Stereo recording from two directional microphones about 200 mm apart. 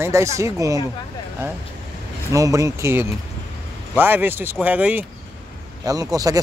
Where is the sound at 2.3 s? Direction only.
15° right (ahead or behind).